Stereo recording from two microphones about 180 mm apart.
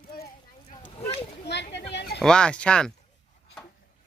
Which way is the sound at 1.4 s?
70° left (ahead or behind).